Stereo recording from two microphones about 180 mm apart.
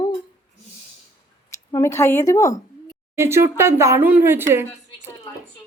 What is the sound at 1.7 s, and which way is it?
A woman's voice, 15° left (ahead or behind).